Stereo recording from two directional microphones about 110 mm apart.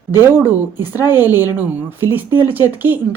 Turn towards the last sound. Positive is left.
turn(degrees=-15)  # may be behind; listen again after turning